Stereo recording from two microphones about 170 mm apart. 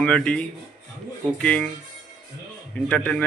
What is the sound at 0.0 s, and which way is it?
Speech, 5° left (ahead or behind).